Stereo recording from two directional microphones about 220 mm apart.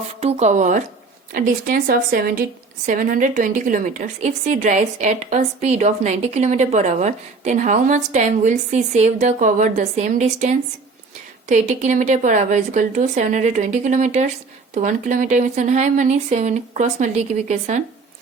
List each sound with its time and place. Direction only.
0.2 s a woman's voice: 30° right (ahead or behind)